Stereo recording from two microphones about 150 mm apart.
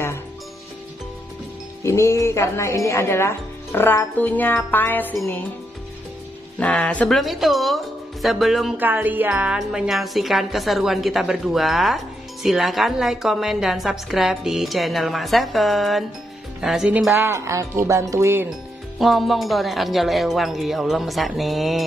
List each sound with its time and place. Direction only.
1.8 s speech: 20° left (ahead or behind)
4.6 s music: 10° left (ahead or behind)
6.6 s a woman's voice: 10° left (ahead or behind)
8.7 s a woman's voice: 10° right (ahead or behind)
18.9 s a woman's voice: centre (ahead or behind)